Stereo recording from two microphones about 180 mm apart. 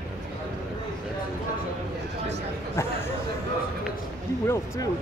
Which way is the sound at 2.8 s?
15° left (ahead or behind).